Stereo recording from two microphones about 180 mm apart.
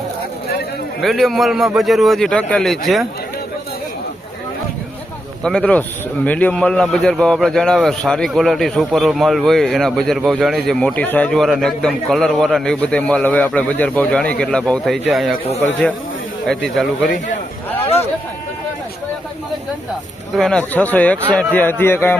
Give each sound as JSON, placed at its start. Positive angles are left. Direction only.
{"t": 1.0, "sound": "a man's voice", "side_deg": 0}
{"t": 5.4, "sound": "a man's voice", "side_deg": 5}
{"t": 16.5, "sound": "a man's voice", "side_deg": 0}
{"t": 17.7, "sound": "a sound", "side_deg": 35}
{"t": 20.3, "sound": "speech", "side_deg": 5}